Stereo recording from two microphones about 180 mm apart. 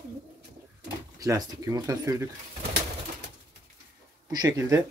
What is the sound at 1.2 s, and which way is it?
Speech, 20° right (ahead or behind).